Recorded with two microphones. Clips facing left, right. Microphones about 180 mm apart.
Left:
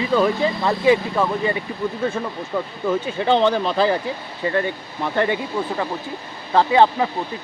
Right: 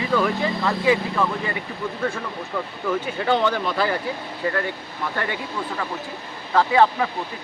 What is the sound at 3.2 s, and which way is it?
Speech, 25° left (ahead or behind).